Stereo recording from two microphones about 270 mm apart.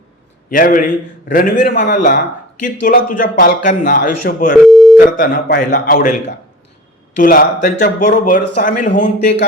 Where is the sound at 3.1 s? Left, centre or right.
Left.